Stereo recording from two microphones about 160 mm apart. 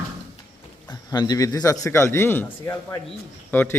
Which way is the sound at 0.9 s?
25° left (ahead or behind).